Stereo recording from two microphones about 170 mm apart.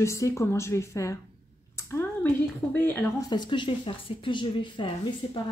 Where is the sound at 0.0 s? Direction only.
15° left (ahead or behind).